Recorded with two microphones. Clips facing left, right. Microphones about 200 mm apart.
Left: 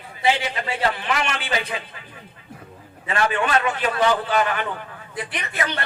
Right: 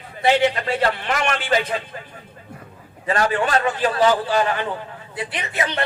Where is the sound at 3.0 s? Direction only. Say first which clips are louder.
Right 2 dB; 40° right (ahead or behind); by 5.8 s 25° right (ahead or behind).